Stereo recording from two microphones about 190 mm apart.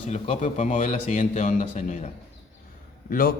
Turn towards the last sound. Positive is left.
turn(degrees=50)  # may be behind; listen again after turning